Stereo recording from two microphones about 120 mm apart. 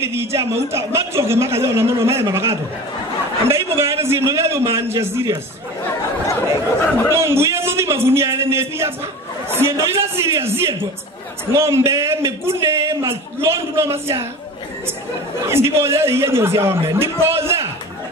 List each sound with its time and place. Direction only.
0.0 s a man's voice: 20° right (ahead or behind)
6.8 s speech: 20° left (ahead or behind)
7.2 s a man's voice: 20° right (ahead or behind)
15.4 s a man's voice: 20° right (ahead or behind)